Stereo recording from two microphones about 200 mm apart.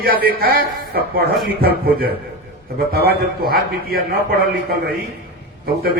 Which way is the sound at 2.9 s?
50° right (ahead or behind).